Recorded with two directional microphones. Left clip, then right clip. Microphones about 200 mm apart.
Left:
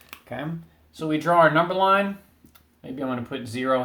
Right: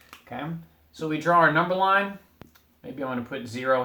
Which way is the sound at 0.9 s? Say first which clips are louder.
Left 3 dB; 35° left (ahead or behind).